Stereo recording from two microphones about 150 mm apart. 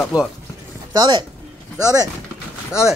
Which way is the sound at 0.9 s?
30° right (ahead or behind).